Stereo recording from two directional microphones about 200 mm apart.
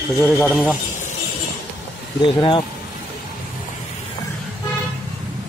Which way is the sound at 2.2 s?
25° left (ahead or behind).